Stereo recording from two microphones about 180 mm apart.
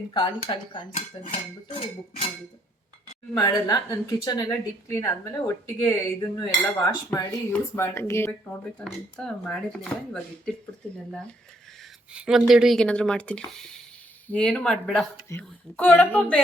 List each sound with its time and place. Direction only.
0.1 s a woman's voice: 25° left (ahead or behind)
1.3 s dishes: 30° left (ahead or behind)
3.3 s a woman's voice: 20° left (ahead or behind)
8.8 s speech: 5° left (ahead or behind)
11.8 s a woman's voice: 5° right (ahead or behind)